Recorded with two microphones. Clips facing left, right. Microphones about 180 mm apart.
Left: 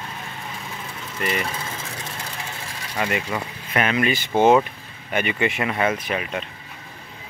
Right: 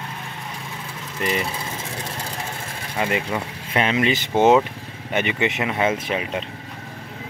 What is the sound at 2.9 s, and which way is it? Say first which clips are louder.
Speech: right 1 dB; 25° right (ahead or behind).